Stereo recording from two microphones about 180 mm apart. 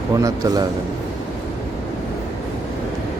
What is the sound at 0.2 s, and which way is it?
Speech, 20° right (ahead or behind).